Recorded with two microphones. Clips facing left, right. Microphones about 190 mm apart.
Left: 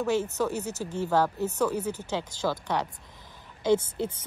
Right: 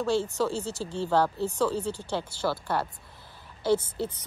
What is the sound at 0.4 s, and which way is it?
Speech, 15° left (ahead or behind).